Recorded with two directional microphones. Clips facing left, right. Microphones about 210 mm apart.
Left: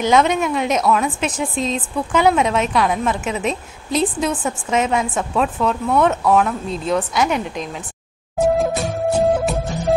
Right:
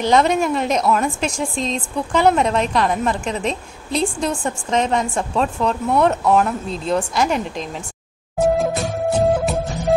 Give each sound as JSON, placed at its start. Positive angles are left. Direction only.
{"t": 0.0, "sound": "a woman's voice", "side_deg": 0}
{"t": 8.4, "sound": "music", "side_deg": 0}